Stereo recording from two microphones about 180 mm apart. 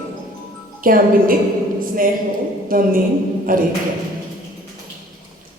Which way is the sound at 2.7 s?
50° right (ahead or behind).